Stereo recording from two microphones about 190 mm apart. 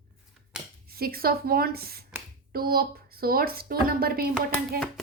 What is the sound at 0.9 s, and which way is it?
A child's voice, 55° right (ahead or behind).